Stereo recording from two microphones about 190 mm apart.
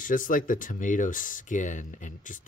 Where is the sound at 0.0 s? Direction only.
45° left (ahead or behind).